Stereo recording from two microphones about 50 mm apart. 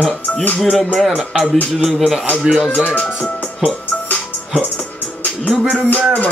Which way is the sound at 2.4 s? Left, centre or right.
Centre.